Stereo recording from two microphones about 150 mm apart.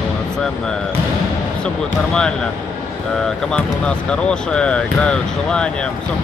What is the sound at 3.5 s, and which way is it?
Speech, 5° left (ahead or behind).